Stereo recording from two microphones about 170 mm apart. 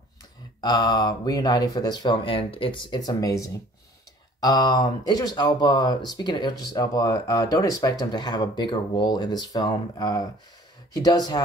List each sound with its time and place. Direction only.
0.6 s speech: 25° left (ahead or behind)